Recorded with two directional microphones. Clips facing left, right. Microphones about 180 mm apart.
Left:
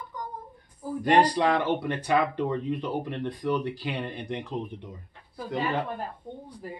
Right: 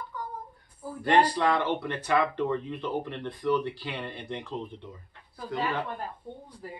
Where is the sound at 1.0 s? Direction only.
15° left (ahead or behind).